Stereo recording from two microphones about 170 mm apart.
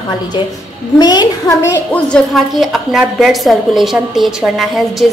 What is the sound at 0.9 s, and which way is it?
Speech, 25° left (ahead or behind).